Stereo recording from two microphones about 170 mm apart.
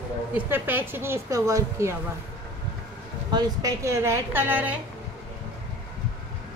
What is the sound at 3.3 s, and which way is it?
A woman's voice, 20° right (ahead or behind).